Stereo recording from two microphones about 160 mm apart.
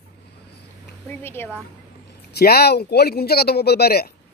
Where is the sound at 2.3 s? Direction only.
80° left.